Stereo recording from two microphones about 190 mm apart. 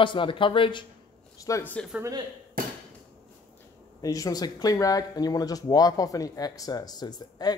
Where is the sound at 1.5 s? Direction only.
10° left (ahead or behind).